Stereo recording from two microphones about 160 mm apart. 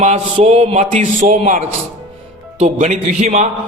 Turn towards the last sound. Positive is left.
turn(degrees=-50)  # may be behind; listen again after turning